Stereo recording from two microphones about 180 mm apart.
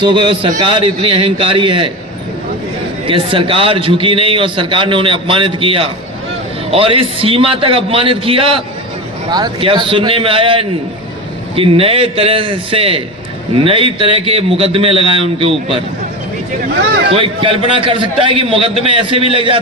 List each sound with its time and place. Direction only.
0.0 s a man's voice: 25° right (ahead or behind)
3.1 s a man's voice: 30° right (ahead or behind)
17.1 s a man's voice: 30° right (ahead or behind)